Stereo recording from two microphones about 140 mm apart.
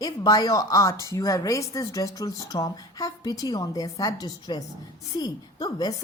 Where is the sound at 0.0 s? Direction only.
25° left (ahead or behind).